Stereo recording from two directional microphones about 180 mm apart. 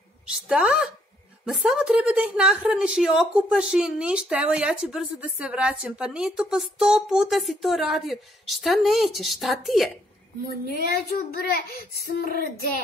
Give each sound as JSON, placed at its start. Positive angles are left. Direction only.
{"t": 0.3, "sound": "a woman's voice", "side_deg": -5}
{"t": 10.7, "sound": "child singing", "side_deg": 55}